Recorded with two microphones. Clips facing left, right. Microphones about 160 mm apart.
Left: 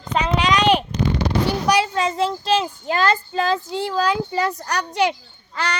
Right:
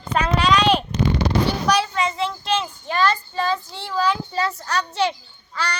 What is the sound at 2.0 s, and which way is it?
Speech, 40° left (ahead or behind).